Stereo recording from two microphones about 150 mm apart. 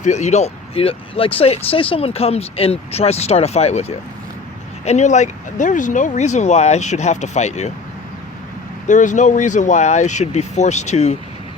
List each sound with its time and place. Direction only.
0.0 s speech: 50° left (ahead or behind)
8.9 s speech: 55° left (ahead or behind)